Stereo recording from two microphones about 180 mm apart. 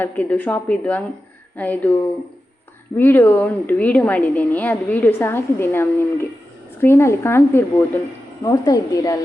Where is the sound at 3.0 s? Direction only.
10° left (ahead or behind).